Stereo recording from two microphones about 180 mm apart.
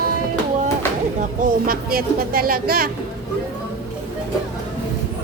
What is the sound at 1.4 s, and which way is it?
Speech, 55° right (ahead or behind).